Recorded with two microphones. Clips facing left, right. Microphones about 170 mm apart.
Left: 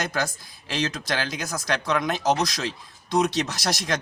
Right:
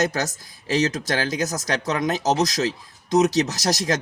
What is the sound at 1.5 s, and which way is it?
Speech, 40° right (ahead or behind).